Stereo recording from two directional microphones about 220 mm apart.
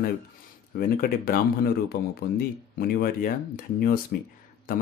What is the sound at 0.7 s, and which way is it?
Speech, 40° left (ahead or behind).